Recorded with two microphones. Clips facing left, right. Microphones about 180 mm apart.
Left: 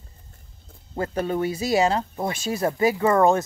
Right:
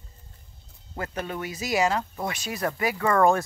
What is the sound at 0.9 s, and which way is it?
Speech, 30° left (ahead or behind).